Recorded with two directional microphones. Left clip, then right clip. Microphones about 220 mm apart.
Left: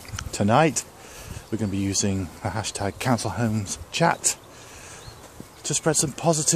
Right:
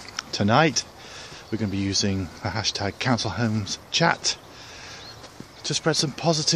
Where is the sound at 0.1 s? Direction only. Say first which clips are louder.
Even; 10° left (ahead or behind).